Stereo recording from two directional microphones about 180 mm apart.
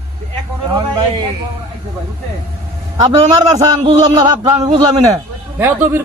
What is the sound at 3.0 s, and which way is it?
A man's voice, 25° right (ahead or behind).